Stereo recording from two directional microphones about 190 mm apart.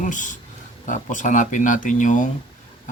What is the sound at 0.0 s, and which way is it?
Speech, 40° left (ahead or behind).